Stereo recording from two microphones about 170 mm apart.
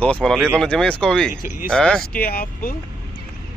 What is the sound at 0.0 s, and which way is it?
Speech, 5° left (ahead or behind).